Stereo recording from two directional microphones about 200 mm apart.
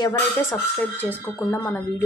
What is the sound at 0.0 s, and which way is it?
Speech, 10° left (ahead or behind).